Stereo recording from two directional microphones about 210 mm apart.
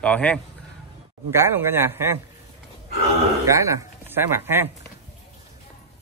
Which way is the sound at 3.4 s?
15° right (ahead or behind).